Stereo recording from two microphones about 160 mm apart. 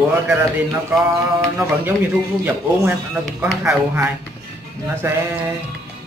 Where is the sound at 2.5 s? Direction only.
15° right (ahead or behind).